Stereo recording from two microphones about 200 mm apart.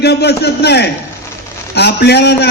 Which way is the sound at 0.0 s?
55° left (ahead or behind).